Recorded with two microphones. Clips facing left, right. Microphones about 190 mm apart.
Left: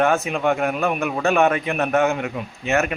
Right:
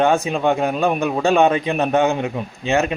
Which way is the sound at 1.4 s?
20° right (ahead or behind).